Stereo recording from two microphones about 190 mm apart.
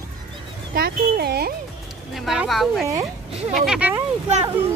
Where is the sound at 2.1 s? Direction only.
Centre (ahead or behind).